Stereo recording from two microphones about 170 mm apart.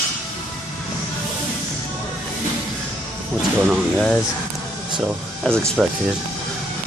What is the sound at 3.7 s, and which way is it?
Speech, centre (ahead or behind).